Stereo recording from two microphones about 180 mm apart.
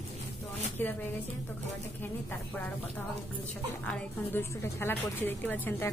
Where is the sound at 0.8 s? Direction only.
10° left (ahead or behind).